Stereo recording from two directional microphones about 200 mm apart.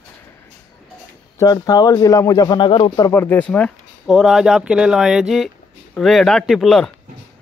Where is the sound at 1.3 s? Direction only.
20° left (ahead or behind).